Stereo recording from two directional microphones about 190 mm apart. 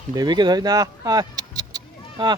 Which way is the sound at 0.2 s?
20° right (ahead or behind).